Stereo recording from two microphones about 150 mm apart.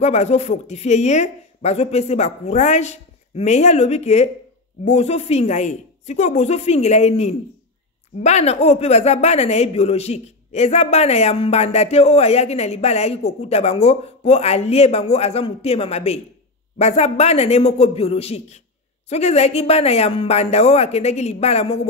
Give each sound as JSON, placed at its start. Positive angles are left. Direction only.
{"t": 0.0, "sound": "a woman's voice", "side_deg": 45}